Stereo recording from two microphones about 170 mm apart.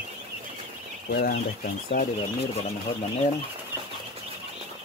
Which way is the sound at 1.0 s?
70° left (ahead or behind).